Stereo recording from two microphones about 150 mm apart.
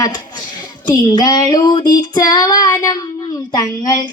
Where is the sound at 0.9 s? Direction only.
25° left (ahead or behind).